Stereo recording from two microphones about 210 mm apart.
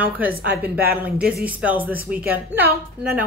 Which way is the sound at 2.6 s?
45° right (ahead or behind).